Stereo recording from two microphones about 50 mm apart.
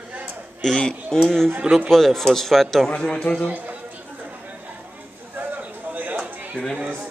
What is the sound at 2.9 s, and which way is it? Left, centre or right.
Speech, centre.